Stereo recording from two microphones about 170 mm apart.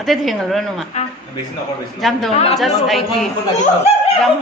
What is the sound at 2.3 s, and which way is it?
Speech, 35° left (ahead or behind).